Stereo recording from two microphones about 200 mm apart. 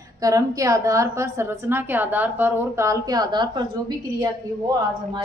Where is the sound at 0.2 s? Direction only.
15° right (ahead or behind).